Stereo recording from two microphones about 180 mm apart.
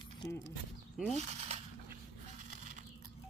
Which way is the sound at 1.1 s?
40° right (ahead or behind).